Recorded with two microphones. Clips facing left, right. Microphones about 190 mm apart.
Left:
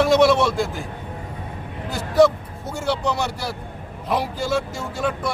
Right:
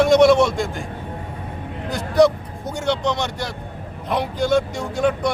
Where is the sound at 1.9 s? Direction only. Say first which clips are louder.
Even; 5° left (ahead or behind).